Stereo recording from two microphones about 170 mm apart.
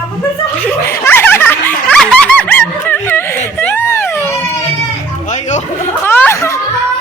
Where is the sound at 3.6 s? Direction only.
10° left (ahead or behind).